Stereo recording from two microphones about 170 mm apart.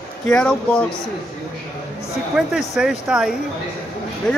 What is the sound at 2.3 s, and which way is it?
Speech, 5° right (ahead or behind).